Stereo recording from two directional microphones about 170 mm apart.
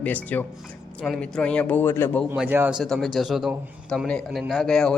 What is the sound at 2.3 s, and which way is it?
Speech, 15° right (ahead or behind).